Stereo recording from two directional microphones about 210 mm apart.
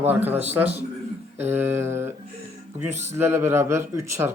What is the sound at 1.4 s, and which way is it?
A man's voice, 10° right (ahead or behind).